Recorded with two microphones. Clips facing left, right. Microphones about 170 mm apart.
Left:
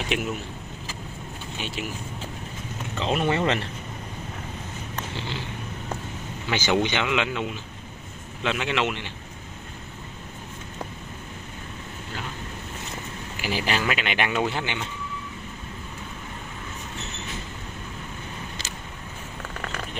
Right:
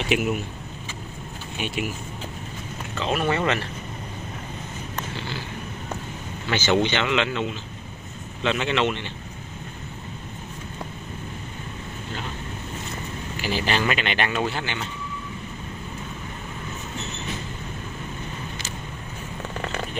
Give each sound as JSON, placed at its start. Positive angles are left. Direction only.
{"t": 0.1, "sound": "speech", "side_deg": -5}
{"t": 3.0, "sound": "speech", "side_deg": 25}
{"t": 5.1, "sound": "a sound", "side_deg": 20}
{"t": 6.5, "sound": "speech", "side_deg": 10}
{"t": 13.4, "sound": "speech", "side_deg": 10}